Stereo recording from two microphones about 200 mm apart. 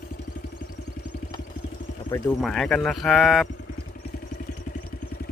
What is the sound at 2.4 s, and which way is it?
Speech, 5° left (ahead or behind).